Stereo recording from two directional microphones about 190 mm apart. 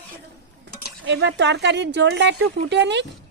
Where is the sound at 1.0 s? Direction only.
70° right (ahead or behind).